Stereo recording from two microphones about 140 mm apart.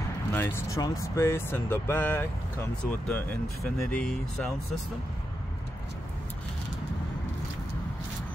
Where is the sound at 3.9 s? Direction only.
5° left (ahead or behind).